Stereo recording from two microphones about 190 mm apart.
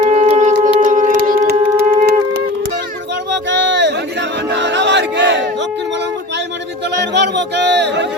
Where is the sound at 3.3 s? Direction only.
70° right (ahead or behind).